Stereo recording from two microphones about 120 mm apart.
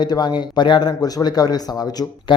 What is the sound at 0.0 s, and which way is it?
Speech, 35° left (ahead or behind).